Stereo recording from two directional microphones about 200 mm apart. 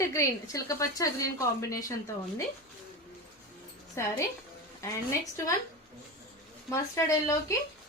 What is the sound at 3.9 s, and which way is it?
Speech, 15° left (ahead or behind).